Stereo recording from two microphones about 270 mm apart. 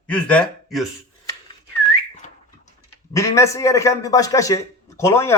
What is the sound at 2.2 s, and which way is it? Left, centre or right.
Bird, left.